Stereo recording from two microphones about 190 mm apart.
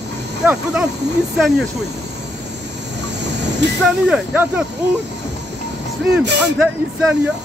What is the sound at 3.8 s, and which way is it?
Speech, 5° right (ahead or behind).